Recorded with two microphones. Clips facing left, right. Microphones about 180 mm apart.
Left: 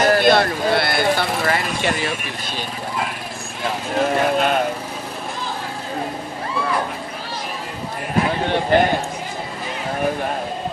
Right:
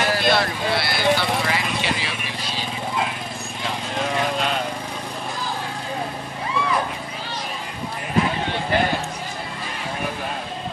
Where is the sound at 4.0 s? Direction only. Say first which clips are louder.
Left 6 dB; 50° left (ahead or behind).